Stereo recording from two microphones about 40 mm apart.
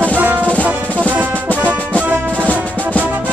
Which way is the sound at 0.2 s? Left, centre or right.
Right.